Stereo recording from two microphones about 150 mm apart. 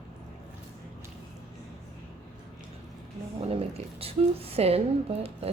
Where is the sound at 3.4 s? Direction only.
40° right (ahead or behind).